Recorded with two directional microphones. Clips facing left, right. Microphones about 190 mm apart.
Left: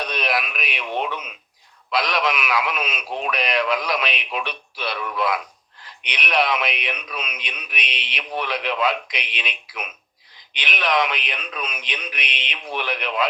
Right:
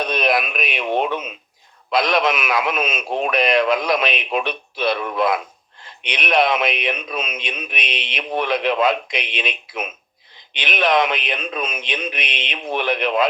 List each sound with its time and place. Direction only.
0.0 s a sound: 50° right (ahead or behind)
0.5 s a man's voice: 50° right (ahead or behind)
7.2 s a man's voice: 25° right (ahead or behind)
7.8 s a man's voice: 50° right (ahead or behind)
10.6 s a man's voice: 50° right (ahead or behind)
11.3 s a man's voice: 25° right (ahead or behind)
12.2 s a man's voice: 50° right (ahead or behind)